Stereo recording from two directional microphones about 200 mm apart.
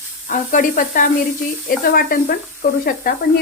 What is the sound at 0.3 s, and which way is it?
Speech, 40° left (ahead or behind).